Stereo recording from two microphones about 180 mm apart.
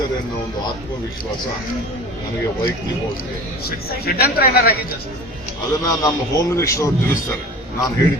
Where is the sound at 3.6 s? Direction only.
55° left (ahead or behind).